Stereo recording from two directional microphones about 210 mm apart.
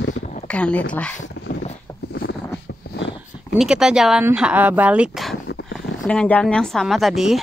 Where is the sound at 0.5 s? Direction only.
5° left (ahead or behind).